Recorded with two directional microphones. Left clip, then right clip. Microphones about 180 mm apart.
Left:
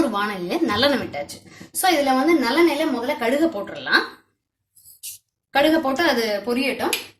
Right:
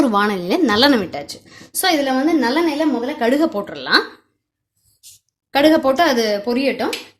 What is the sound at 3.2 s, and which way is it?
Speech, 55° right (ahead or behind).